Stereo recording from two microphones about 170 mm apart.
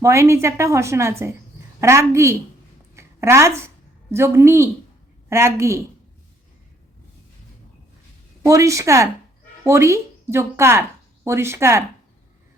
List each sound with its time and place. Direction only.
0.0 s a woman's voice: 15° right (ahead or behind)
2.9 s a sound: 15° right (ahead or behind)
4.1 s a woman's voice: 15° right (ahead or behind)
8.4 s a woman's voice: 20° right (ahead or behind)